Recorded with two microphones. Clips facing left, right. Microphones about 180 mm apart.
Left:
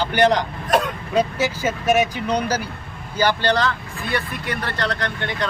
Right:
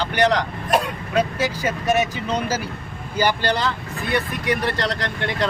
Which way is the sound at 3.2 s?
10° right (ahead or behind).